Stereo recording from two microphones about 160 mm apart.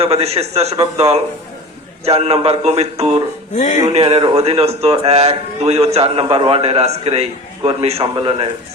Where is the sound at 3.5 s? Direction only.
50° left (ahead or behind).